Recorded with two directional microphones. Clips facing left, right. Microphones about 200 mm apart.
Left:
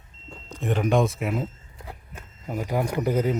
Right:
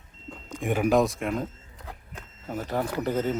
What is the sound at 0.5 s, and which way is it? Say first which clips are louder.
Speech: even; 10° right (ahead or behind).